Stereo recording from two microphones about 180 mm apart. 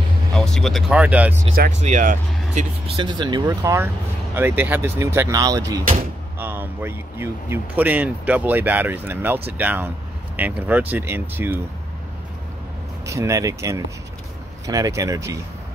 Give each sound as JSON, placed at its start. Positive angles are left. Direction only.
{"t": 0.3, "sound": "speech", "side_deg": 5}
{"t": 1.8, "sound": "speech", "side_deg": -45}
{"t": 3.0, "sound": "speech", "side_deg": -25}
{"t": 13.0, "sound": "speech", "side_deg": -15}